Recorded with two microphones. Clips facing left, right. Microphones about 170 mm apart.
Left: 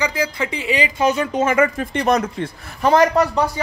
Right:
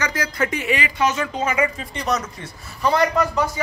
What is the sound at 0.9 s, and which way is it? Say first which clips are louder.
Speech: left 4 dB; 35° left (ahead or behind).